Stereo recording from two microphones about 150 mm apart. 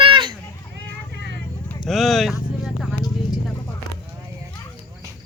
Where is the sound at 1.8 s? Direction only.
Centre (ahead or behind).